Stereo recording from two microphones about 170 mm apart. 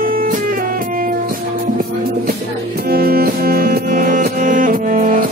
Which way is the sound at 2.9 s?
65° right (ahead or behind).